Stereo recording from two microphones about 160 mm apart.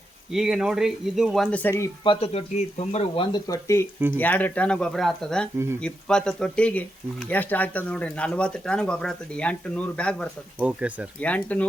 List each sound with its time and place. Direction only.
0.3 s speech: 5° right (ahead or behind); by 1.9 s 15° left (ahead or behind)
2.0 s speech: 40° left (ahead or behind)
3.3 s speech: 20° left (ahead or behind); by 10.2 s 5° left (ahead or behind)
10.6 s speech: 10° right (ahead or behind)
11.2 s speech: 10° left (ahead or behind)